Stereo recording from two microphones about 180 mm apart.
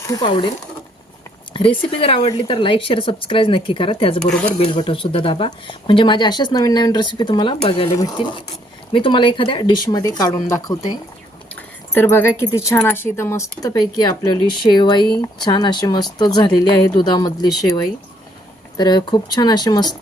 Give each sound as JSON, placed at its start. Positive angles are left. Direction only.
{"t": 0.0, "sound": "speech", "side_deg": 20}
{"t": 1.5, "sound": "speech", "side_deg": 30}
{"t": 11.9, "sound": "speech", "side_deg": 10}
{"t": 18.8, "sound": "speech", "side_deg": 20}